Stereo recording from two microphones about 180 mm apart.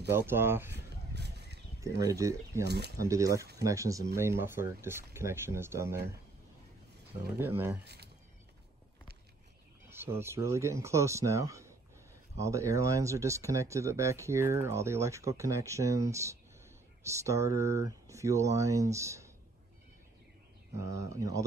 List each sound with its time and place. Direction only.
0.1 s speech: 10° right (ahead or behind)
1.1 s a sound: 65° right (ahead or behind)
1.8 s speech: 20° right (ahead or behind)
2.6 s speech: 65° right (ahead or behind)
3.0 s speech: 15° right (ahead or behind)
7.3 s speech: 10° right (ahead or behind)
7.8 s speech: 65° right (ahead or behind)
9.8 s speech: 15° right (ahead or behind)
20.7 s speech: 15° right (ahead or behind)